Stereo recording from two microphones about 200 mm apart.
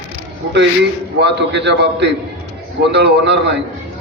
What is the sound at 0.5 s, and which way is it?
A man's voice, 60° right (ahead or behind).